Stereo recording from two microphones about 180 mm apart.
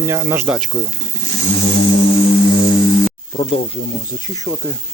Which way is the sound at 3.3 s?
30° left (ahead or behind).